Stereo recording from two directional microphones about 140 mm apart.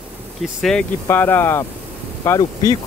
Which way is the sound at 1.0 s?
15° left (ahead or behind).